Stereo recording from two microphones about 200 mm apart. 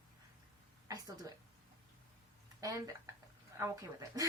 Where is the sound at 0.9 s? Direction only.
15° right (ahead or behind).